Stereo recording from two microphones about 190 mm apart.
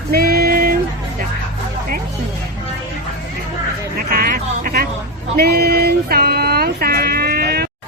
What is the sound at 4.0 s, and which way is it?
Music, 50° right (ahead or behind).